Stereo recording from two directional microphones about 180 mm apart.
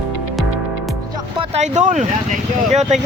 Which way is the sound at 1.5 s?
40° right (ahead or behind).